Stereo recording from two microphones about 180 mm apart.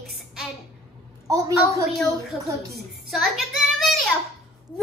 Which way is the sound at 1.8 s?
Centre (ahead or behind).